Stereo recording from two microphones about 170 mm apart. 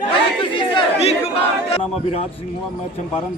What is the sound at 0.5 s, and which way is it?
Speech, 35° left (ahead or behind).